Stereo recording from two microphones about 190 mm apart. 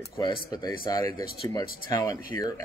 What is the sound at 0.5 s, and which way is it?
A man's voice, 20° left (ahead or behind).